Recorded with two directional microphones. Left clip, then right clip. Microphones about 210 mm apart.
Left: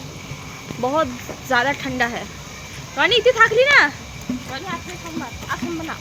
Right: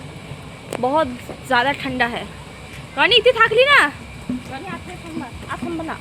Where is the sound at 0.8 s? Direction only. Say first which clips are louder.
Right 2 dB; centre (ahead or behind).